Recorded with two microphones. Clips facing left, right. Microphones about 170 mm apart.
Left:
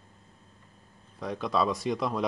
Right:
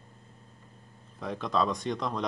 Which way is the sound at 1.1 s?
Centre (ahead or behind).